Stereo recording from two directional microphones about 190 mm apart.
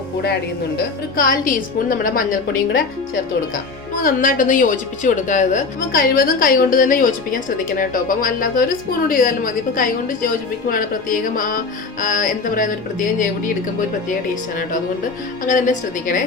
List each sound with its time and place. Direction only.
1.1 s a woman's voice: 45° left (ahead or behind)
4.0 s a woman's voice: 45° left (ahead or behind)
15.4 s a woman's voice: 45° left (ahead or behind)